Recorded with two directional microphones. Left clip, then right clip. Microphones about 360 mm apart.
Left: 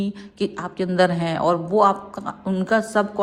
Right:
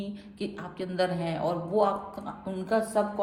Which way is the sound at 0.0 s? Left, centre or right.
Centre.